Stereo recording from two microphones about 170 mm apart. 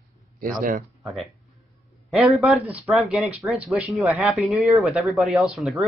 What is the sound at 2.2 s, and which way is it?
Speech, centre (ahead or behind).